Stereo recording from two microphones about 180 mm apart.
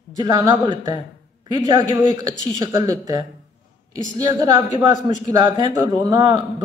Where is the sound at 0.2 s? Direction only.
20° right (ahead or behind).